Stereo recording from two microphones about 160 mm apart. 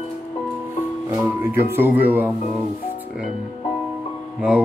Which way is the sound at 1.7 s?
10° right (ahead or behind).